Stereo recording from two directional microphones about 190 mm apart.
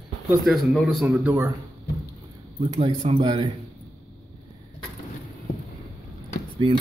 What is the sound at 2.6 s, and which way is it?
Speech, 30° right (ahead or behind).